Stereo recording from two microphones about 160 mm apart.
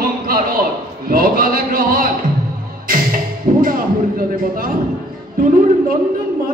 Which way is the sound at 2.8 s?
60° right (ahead or behind).